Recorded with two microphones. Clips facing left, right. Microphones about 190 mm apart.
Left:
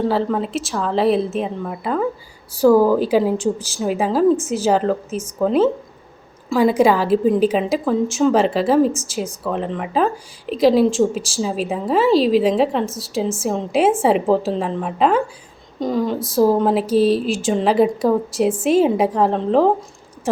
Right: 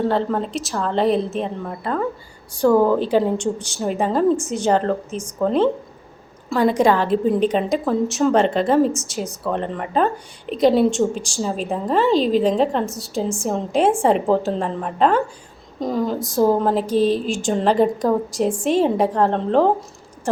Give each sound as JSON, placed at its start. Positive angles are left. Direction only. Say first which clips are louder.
{"t": 0.1, "sound": "a woman's voice", "louder": "left 1 dB", "side_deg": 0}